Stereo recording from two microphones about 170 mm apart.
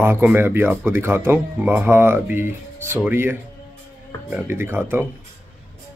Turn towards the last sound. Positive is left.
turn(degrees=-10)  # may be behind; listen again after turning